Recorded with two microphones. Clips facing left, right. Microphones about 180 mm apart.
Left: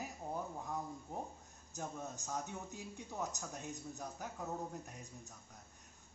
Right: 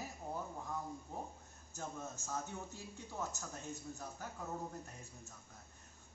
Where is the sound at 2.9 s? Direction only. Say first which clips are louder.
Left 1 dB; 15° left (ahead or behind).